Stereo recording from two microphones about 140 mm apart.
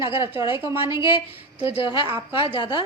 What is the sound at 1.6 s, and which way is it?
Speech, 45° left (ahead or behind).